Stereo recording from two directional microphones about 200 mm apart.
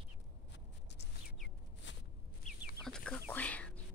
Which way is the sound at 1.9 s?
65° left (ahead or behind).